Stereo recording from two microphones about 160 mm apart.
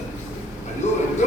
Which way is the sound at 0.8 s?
45° left (ahead or behind).